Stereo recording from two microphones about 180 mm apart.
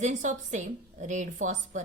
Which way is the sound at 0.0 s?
45° right (ahead or behind).